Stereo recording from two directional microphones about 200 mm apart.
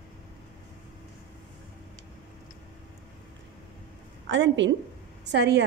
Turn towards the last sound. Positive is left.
turn(degrees=-55)  # may be behind; listen again after turning